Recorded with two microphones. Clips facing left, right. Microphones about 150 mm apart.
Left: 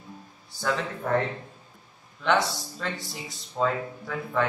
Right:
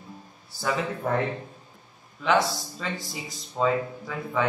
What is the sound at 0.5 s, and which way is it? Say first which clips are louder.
Speech: even; centre (ahead or behind).